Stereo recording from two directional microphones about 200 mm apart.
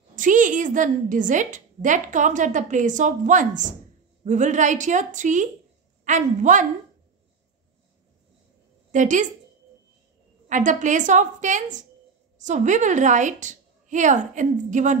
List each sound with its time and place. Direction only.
0.1 s a woman's voice: 40° right (ahead or behind)
8.9 s a woman's voice: 40° right (ahead or behind)
10.5 s a woman's voice: 40° right (ahead or behind)